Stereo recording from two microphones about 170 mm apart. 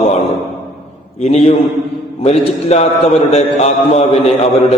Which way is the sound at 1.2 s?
40° left (ahead or behind).